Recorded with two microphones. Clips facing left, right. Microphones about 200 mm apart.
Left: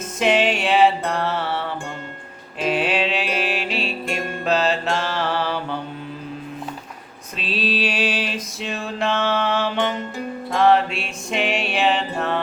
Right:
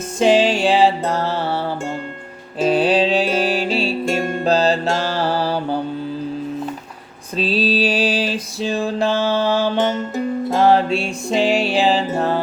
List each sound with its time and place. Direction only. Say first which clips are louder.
0.2 s music: right 5 dB; 30° right (ahead or behind)
7.3 s mantra: right 6 dB; 35° right (ahead or behind)
10.5 s music: right 2 dB; 35° right (ahead or behind)